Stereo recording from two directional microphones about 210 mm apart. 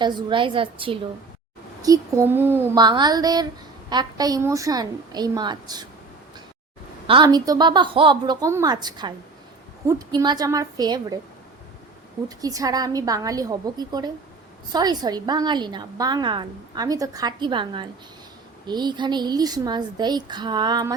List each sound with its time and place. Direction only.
0.0 s a woman's voice: 20° right (ahead or behind)
7.1 s a woman's voice: 20° right (ahead or behind)
12.4 s a woman's voice: 15° right (ahead or behind)